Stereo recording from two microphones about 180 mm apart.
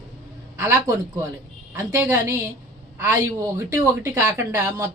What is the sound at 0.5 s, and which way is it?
A man's voice, 15° right (ahead or behind).